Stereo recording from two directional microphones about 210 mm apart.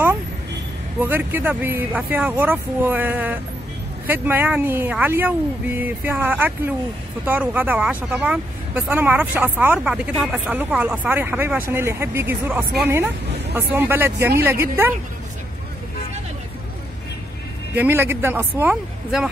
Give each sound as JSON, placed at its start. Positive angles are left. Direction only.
{"t": 0.9, "sound": "speech", "side_deg": -10}
{"t": 17.7, "sound": "speech", "side_deg": -10}